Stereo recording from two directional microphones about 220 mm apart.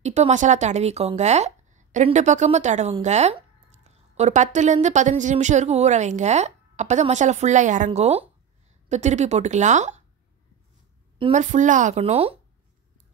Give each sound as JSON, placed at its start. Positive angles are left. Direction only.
{"t": 0.0, "sound": "speech", "side_deg": -30}
{"t": 11.1, "sound": "speech", "side_deg": -30}